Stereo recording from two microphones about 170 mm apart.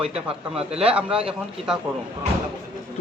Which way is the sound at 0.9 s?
5° right (ahead or behind).